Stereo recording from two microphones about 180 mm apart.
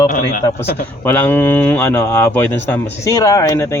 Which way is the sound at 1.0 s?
10° left (ahead or behind).